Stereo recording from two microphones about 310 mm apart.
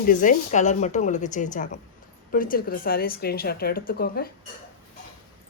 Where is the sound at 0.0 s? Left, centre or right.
Left.